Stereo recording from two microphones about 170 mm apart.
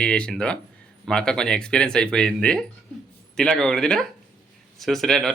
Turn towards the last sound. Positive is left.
turn(degrees=0)  # may be behind; listen again after turning